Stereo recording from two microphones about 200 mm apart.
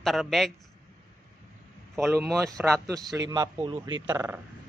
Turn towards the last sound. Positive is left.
turn(degrees=-10)  # may be behind; listen again after turning